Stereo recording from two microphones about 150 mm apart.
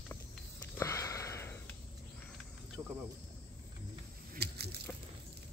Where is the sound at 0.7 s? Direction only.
20° left (ahead or behind).